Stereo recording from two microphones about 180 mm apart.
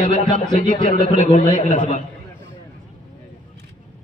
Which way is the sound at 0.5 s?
45° left (ahead or behind).